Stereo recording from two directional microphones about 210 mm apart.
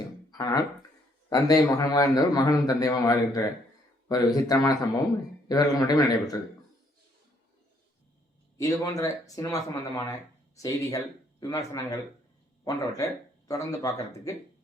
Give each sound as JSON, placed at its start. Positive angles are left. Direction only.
{"t": 0.3, "sound": "a man's voice", "side_deg": 20}
{"t": 8.5, "sound": "a man's voice", "side_deg": 15}